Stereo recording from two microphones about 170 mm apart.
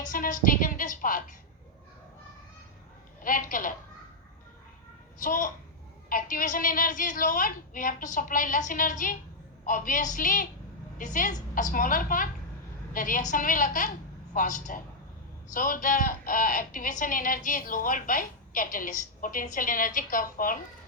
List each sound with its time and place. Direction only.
0.0 s a woman's voice: 50° left (ahead or behind)
3.2 s a woman's voice: 55° left (ahead or behind)
5.2 s a woman's voice: 50° left (ahead or behind)